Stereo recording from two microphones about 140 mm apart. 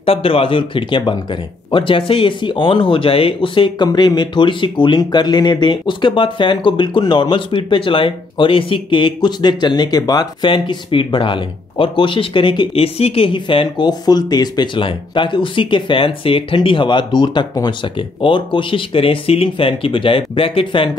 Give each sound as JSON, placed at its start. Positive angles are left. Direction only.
{"t": 0.0, "sound": "speech", "side_deg": 40}